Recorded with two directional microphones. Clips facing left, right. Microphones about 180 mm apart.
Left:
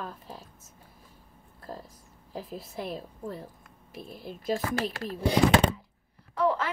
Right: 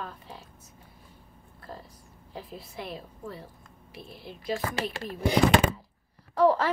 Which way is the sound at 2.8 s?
40° left (ahead or behind).